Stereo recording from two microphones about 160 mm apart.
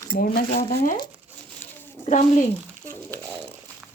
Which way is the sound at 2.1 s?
50° left (ahead or behind).